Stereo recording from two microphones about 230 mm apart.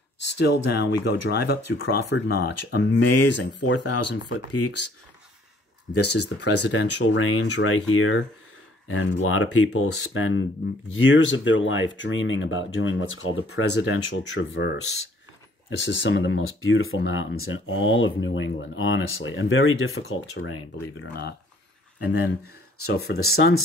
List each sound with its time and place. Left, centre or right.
0.3 s speech: left
2.3 s speech: left
5.9 s speech: left
21.1 s speech: left
22.4 s speech: left
22.9 s speech: left
23.3 s speech: left